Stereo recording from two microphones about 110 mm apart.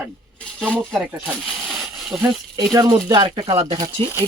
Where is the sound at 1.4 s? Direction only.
Centre (ahead or behind).